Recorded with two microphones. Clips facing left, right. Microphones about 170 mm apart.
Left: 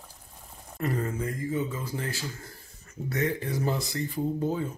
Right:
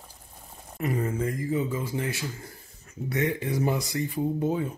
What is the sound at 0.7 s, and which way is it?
Speech, 10° right (ahead or behind).